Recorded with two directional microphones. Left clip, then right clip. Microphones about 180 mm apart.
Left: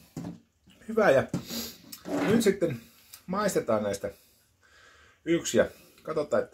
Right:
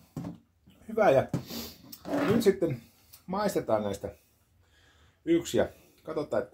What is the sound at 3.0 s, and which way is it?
Speech, 10° left (ahead or behind).